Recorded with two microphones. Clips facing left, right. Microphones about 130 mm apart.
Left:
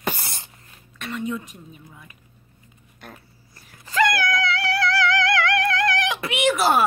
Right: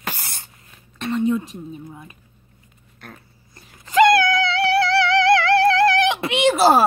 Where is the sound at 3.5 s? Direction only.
20° right (ahead or behind).